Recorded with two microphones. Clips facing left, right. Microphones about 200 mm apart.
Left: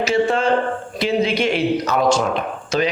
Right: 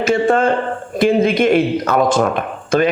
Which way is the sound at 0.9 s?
50° right (ahead or behind).